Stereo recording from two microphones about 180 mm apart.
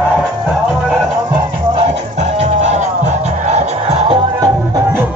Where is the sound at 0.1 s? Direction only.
Centre (ahead or behind).